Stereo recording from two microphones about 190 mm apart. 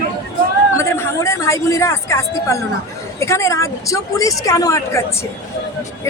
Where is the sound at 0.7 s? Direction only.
15° left (ahead or behind).